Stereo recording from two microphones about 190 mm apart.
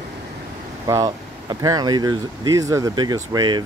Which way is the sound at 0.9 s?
20° right (ahead or behind).